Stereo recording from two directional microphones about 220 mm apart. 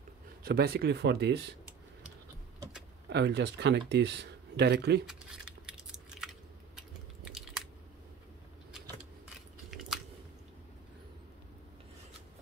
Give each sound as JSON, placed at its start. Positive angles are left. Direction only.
{"t": 0.4, "sound": "speech", "side_deg": -45}
{"t": 3.1, "sound": "speech", "side_deg": -50}
{"t": 5.0, "sound": "a sound", "side_deg": -5}
{"t": 9.7, "sound": "chewing", "side_deg": 0}